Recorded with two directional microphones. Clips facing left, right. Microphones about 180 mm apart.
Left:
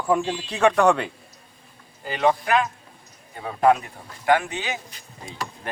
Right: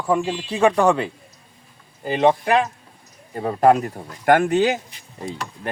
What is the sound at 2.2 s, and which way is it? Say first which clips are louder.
Speech: right 4 dB; 25° right (ahead or behind).